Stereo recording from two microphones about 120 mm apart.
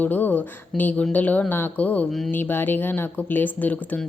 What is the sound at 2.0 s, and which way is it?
Speech, centre (ahead or behind).